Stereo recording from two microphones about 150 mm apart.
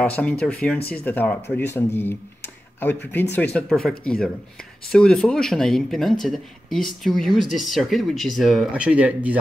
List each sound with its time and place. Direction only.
0.0 s speech: 10° left (ahead or behind); by 9.4 s 10° right (ahead or behind)